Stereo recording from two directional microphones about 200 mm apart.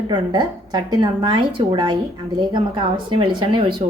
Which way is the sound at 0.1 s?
20° right (ahead or behind).